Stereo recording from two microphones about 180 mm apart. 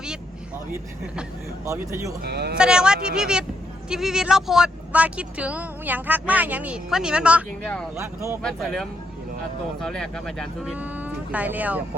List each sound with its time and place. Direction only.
1.6 s speech: 15° right (ahead or behind)
2.2 s speech: 65° right (ahead or behind)
2.6 s speech: 5° right (ahead or behind)
7.9 s speech: 15° right (ahead or behind)
8.4 s speech: centre (ahead or behind)